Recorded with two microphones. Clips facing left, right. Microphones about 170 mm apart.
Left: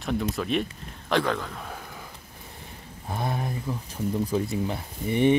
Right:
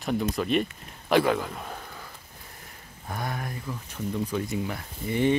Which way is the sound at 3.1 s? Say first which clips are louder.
Left 3 dB; 25° left (ahead or behind).